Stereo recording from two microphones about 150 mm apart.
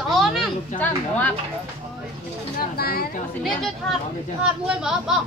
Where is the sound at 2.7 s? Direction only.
90° left.